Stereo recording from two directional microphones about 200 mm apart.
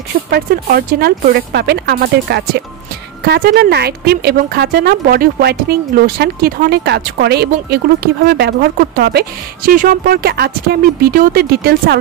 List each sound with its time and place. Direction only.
0.3 s speech: 50° right (ahead or behind)